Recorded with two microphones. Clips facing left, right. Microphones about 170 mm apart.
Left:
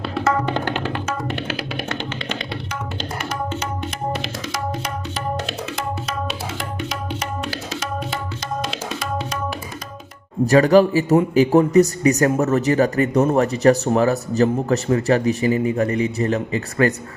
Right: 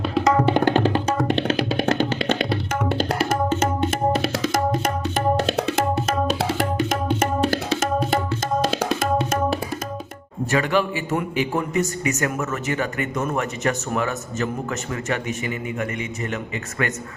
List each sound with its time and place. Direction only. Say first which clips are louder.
0.3 s tabla: right 3 dB; 15° right (ahead or behind)
0.7 s music: right 5 dB; 35° right (ahead or behind)
3.2 s tabla: right 5 dB; 50° right (ahead or behind)
6.6 s music: right 6 dB; 50° right (ahead or behind)
9.0 s tabla: right 5 dB; 50° right (ahead or behind)
10.4 s a man's voice: left 8 dB; 35° left (ahead or behind)